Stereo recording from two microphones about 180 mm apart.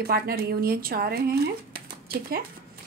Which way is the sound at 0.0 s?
60° right (ahead or behind).